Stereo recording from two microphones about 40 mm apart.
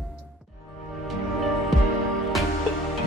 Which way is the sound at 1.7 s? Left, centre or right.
Centre.